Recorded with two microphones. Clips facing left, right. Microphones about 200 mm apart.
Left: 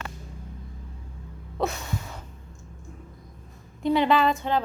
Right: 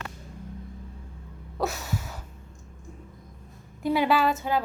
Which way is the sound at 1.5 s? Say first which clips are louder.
Left 1 dB; 5° right (ahead or behind).